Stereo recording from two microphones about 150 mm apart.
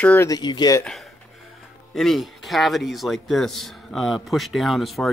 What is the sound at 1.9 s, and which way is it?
A man's voice, centre (ahead or behind).